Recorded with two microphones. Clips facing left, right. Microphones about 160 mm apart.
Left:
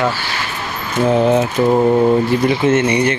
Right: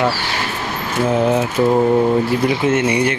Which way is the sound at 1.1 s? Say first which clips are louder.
Left 3 dB; 5° right (ahead or behind).